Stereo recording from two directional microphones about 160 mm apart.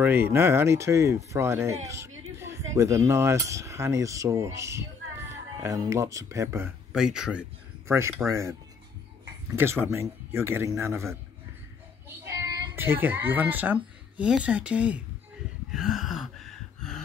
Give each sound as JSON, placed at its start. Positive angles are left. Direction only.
{"t": 0.0, "sound": "speech", "side_deg": -15}
{"t": 6.9, "sound": "speech", "side_deg": -5}
{"t": 7.9, "sound": "speech", "side_deg": -15}
{"t": 9.6, "sound": "speech", "side_deg": -15}
{"t": 12.1, "sound": "child singing", "side_deg": -20}
{"t": 12.7, "sound": "speech", "side_deg": -15}
{"t": 15.7, "sound": "gasp", "side_deg": 0}